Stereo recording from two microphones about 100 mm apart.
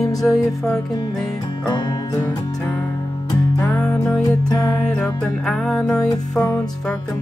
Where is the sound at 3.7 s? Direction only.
5° left (ahead or behind).